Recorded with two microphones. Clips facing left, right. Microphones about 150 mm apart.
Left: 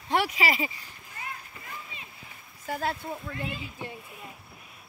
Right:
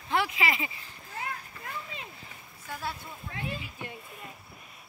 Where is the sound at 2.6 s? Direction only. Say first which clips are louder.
Left 6 dB; 60° left (ahead or behind).